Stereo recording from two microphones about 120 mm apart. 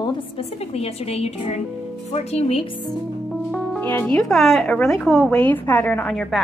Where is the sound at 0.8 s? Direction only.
60° left (ahead or behind).